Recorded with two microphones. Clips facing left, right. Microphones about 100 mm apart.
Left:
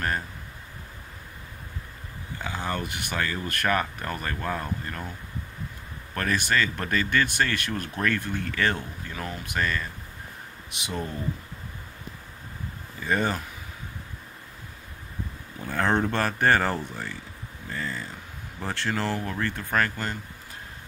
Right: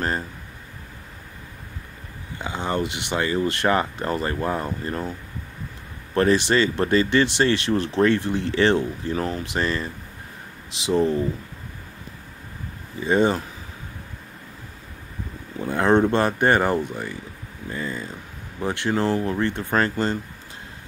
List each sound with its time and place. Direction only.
2.3 s speech: 20° right (ahead or behind)
6.1 s speech: 25° right (ahead or behind)
10.9 s speech: 30° right (ahead or behind)
13.0 s speech: 20° right (ahead or behind)
15.6 s speech: 20° right (ahead or behind)